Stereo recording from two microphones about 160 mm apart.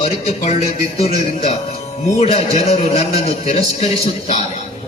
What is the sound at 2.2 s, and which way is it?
A man's voice, 40° left (ahead or behind).